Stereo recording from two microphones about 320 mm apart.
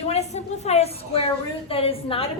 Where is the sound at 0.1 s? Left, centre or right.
Centre.